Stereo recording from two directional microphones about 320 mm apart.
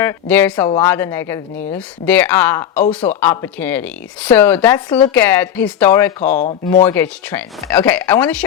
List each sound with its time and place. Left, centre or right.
0.0 s a woman's voice: centre
6.3 s speech: left
6.8 s a woman's voice: centre